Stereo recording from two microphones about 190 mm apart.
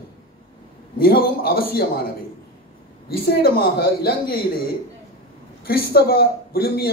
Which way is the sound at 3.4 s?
55° left (ahead or behind).